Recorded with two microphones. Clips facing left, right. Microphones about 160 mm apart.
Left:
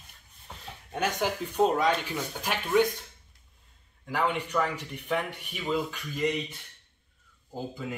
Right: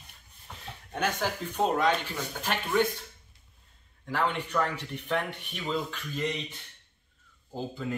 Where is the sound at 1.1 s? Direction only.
5° left (ahead or behind).